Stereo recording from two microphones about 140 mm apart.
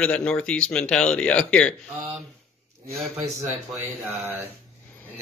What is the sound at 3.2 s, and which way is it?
Speech, 55° right (ahead or behind).